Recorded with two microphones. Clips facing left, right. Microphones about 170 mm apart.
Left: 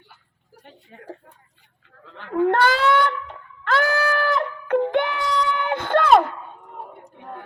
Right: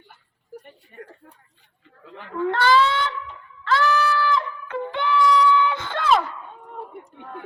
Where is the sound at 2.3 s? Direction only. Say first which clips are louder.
Left 1 dB; 55° left (ahead or behind).